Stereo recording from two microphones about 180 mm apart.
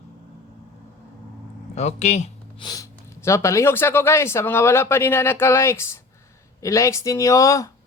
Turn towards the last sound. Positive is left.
turn(degrees=15)  # may be behind; listen again after turning